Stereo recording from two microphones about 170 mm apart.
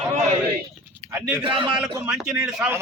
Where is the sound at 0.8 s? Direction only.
15° right (ahead or behind).